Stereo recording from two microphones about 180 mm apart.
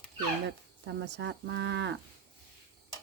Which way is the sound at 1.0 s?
75° right (ahead or behind).